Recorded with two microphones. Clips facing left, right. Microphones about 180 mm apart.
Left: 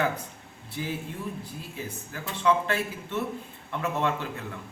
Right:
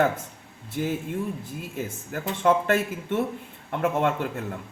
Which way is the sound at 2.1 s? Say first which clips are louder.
Right 3 dB; 50° right (ahead or behind).